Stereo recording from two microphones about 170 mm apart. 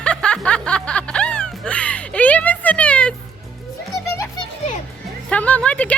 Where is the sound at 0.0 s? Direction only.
5° left (ahead or behind).